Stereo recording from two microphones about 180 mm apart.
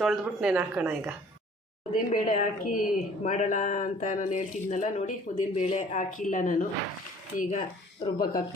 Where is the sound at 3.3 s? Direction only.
40° left (ahead or behind).